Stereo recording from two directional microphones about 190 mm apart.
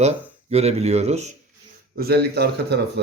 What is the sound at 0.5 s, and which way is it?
Speech, 35° right (ahead or behind).